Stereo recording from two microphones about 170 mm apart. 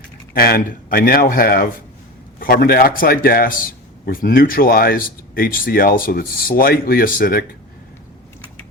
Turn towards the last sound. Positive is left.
turn(degrees=60)  # may be behind; listen again after turning